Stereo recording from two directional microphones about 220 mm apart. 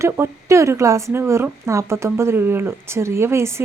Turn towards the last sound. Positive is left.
turn(degrees=-10)  # may be behind; listen again after turning